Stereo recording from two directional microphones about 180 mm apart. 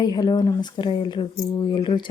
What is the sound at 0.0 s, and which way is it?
Speech, 25° left (ahead or behind).